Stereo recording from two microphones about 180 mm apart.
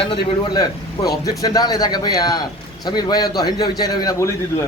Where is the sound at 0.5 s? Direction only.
20° left (ahead or behind).